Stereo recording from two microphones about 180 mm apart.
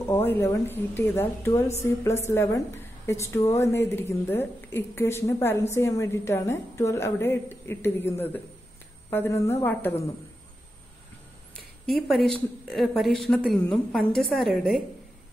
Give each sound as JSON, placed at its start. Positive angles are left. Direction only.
{"t": 0.1, "sound": "a woman's voice", "side_deg": 10}
{"t": 12.3, "sound": "a woman's voice", "side_deg": 5}